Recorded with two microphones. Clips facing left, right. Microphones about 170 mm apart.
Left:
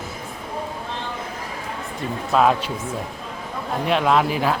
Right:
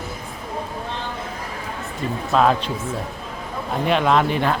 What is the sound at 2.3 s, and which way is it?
Speech, 5° left (ahead or behind).